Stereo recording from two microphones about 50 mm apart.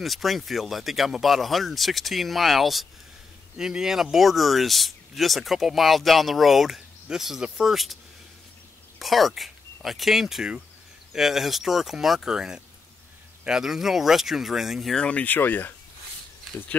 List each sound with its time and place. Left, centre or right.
0.0 s speech: centre
9.0 s speech: centre
15.0 s speech: left
15.2 s speech: left